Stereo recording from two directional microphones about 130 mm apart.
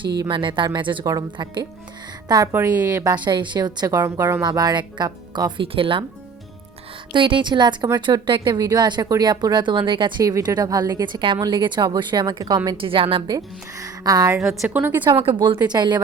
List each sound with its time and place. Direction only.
0.0 s speech: 40° right (ahead or behind)
2.5 s a woman's voice: 15° right (ahead or behind)
3.0 s speech: 30° right (ahead or behind)
4.4 s speech: 30° right (ahead or behind)
7.1 s speech: 40° right (ahead or behind)
12.7 s speech: 45° right (ahead or behind)
14.7 s a woman's voice: 15° right (ahead or behind)
15.6 s speech: 35° right (ahead or behind)